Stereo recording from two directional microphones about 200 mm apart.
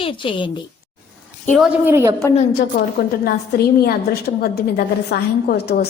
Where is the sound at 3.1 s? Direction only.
50° left (ahead or behind).